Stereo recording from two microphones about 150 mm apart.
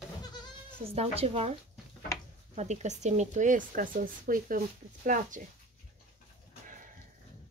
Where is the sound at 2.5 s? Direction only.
50° right (ahead or behind).